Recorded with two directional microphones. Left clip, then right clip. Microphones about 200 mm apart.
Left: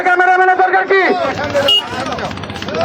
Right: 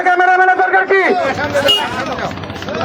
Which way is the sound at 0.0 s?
15° right (ahead or behind).